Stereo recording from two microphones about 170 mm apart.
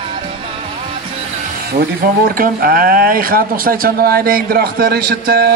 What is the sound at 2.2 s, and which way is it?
A man's voice, 60° right (ahead or behind).